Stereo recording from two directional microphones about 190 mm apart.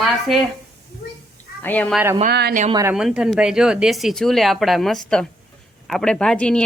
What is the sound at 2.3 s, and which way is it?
Speech, 55° right (ahead or behind).